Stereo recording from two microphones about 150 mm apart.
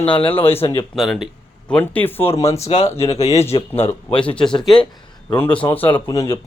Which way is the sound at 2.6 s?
45° left (ahead or behind).